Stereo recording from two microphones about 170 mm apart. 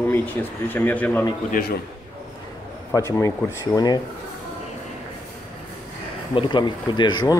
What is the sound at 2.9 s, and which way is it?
Speech, 15° left (ahead or behind).